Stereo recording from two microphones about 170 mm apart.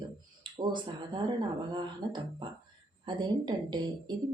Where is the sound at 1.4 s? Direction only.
25° right (ahead or behind).